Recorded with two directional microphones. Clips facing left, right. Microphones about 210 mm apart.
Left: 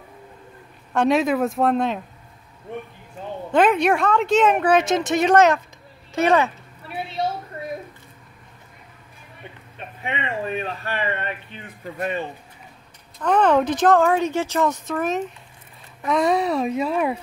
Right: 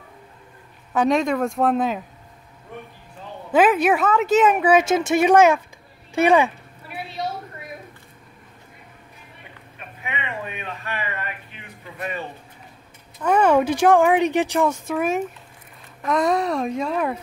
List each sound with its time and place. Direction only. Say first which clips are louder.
0.9 s speech: left 1 dB; centre (ahead or behind)
3.5 s speech: right 1 dB; 5° right (ahead or behind)
9.8 s speech: left 3 dB; 35° left (ahead or behind)
13.2 s speech: right 1 dB; 10° right (ahead or behind); by 17.2 s 10° left (ahead or behind)